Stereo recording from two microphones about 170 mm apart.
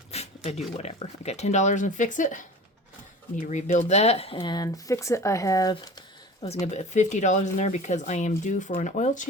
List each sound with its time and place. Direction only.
0.1 s dog: 40° left (ahead or behind)
0.8 s speech: 40° left (ahead or behind); by 5.9 s 20° left (ahead or behind)
6.5 s speech: 40° left (ahead or behind)